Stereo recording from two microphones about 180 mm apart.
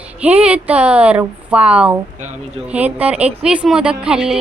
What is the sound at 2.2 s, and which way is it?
Speech, 40° right (ahead or behind).